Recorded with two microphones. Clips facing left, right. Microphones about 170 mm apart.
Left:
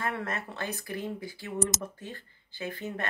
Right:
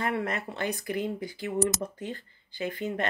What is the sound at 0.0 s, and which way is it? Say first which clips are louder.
Speech: right 4 dB; 15° right (ahead or behind).